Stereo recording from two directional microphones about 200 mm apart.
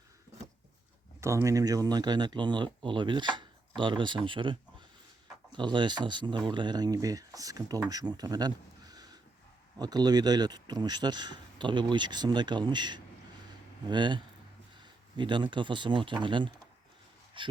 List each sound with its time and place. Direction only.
1.2 s speech: 15° right (ahead or behind)